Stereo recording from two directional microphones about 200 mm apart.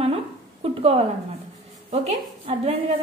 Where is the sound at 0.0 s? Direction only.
30° right (ahead or behind).